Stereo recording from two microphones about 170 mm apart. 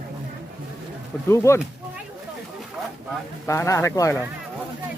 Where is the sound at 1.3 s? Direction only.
15° left (ahead or behind).